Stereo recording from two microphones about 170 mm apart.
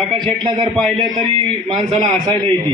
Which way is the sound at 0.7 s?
Centre (ahead or behind).